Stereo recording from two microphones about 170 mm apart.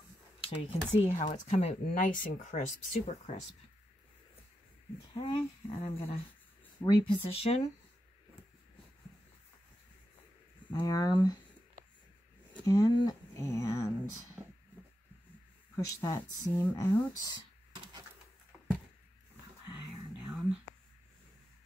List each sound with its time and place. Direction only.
0.4 s speech: 35° left (ahead or behind)
5.2 s speech: 35° left (ahead or behind)
10.8 s speech: 20° left (ahead or behind)
12.6 s speech: 20° left (ahead or behind)
15.7 s speech: 20° left (ahead or behind)